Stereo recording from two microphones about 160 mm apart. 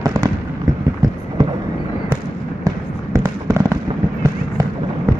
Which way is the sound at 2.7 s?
25° right (ahead or behind).